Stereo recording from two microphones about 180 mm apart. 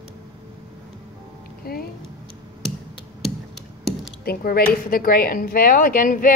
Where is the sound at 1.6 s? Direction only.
60° left (ahead or behind).